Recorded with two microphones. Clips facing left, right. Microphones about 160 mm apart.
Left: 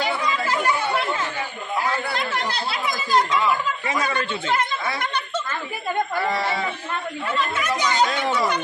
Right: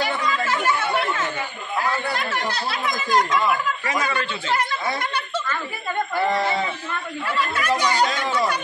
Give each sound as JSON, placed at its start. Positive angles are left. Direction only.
{"t": 7.2, "sound": "a woman's voice", "side_deg": 20}